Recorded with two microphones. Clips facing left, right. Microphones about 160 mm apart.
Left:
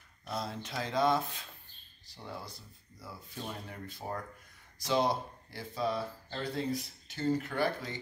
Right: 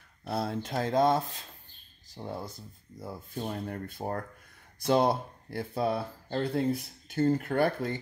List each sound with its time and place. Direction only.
0.3 s speech: 55° right (ahead or behind)
1.0 s speech: 35° right (ahead or behind); by 8.0 s 55° right (ahead or behind)